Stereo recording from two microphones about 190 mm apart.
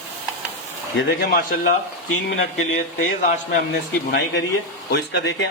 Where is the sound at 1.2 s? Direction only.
55° left (ahead or behind).